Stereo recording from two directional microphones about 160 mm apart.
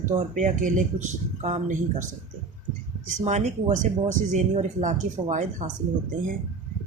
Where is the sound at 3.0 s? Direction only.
45° right (ahead or behind).